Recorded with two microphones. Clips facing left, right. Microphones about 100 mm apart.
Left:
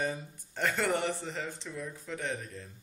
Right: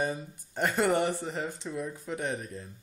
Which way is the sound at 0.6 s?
15° right (ahead or behind).